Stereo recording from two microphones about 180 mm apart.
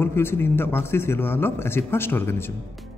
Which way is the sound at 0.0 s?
10° left (ahead or behind).